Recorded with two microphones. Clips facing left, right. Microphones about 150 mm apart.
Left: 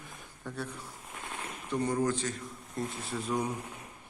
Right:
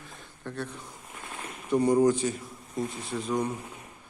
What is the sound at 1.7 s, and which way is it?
Speech, 10° right (ahead or behind).